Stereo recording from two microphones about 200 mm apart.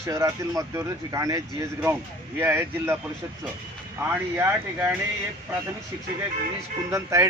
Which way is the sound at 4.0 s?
10° right (ahead or behind).